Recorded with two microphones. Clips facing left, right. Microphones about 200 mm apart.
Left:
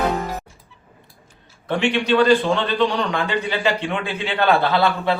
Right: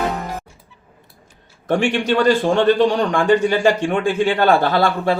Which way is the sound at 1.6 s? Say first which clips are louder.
Right 3 dB; 45° right (ahead or behind).